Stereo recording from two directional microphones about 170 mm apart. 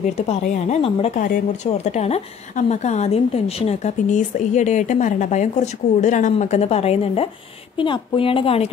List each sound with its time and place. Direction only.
0.3 s a woman's voice: 40° left (ahead or behind)
1.2 s a woman's voice: 45° left (ahead or behind)